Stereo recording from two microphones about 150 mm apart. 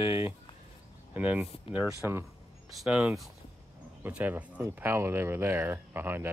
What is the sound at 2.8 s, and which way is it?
Speech, 5° right (ahead or behind).